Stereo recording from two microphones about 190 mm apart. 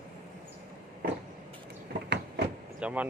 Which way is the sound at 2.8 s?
5° right (ahead or behind).